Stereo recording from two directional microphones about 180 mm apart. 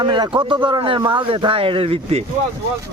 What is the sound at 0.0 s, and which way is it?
Speech, 25° right (ahead or behind).